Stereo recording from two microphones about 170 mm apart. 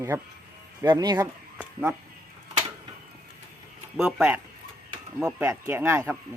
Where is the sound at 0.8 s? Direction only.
25° right (ahead or behind).